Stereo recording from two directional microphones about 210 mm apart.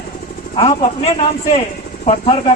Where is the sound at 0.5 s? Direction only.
25° left (ahead or behind).